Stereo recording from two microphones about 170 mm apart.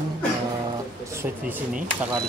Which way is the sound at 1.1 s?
15° right (ahead or behind).